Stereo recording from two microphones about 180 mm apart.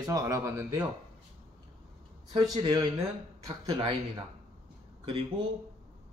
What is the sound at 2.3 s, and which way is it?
A man's voice, 25° right (ahead or behind).